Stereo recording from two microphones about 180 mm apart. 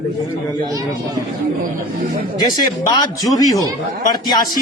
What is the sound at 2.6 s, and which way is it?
Speech, 20° left (ahead or behind).